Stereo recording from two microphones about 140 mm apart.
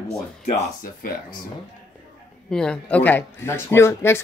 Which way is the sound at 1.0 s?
80° left.